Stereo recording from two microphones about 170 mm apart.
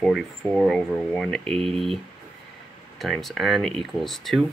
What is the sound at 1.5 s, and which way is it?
Speech, 35° right (ahead or behind).